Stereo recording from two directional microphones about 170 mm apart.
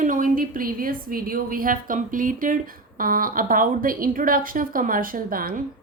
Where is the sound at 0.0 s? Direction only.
50° right (ahead or behind).